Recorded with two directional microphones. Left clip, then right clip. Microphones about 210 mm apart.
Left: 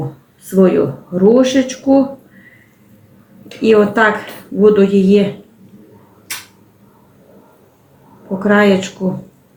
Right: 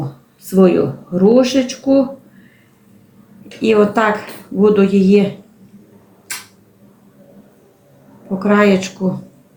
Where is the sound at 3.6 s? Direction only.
20° right (ahead or behind).